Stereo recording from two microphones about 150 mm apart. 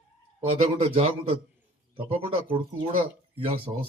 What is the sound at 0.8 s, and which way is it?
A man's voice, 40° right (ahead or behind).